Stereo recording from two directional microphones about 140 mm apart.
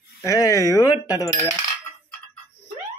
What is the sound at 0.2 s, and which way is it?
Coin, 25° left (ahead or behind).